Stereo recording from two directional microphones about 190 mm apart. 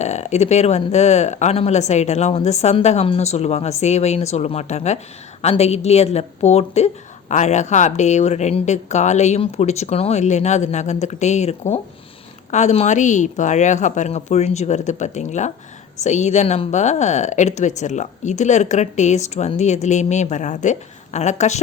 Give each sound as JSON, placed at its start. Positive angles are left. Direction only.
{"t": 0.0, "sound": "a woman's voice", "side_deg": 35}